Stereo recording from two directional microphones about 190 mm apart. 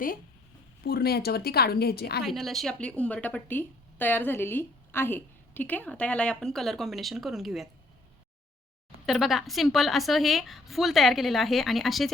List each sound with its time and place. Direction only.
0.9 s a woman's voice: 55° left (ahead or behind)
2.2 s speech: centre (ahead or behind)
9.0 s a woman's voice: centre (ahead or behind)